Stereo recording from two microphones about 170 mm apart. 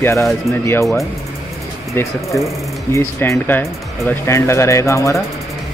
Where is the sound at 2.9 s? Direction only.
15° left (ahead or behind).